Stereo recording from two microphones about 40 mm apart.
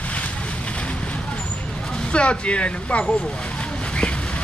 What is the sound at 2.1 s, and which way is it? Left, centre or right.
Speech, left.